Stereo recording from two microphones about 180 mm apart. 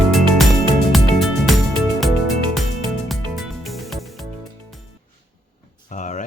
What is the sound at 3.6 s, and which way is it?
Music, centre (ahead or behind).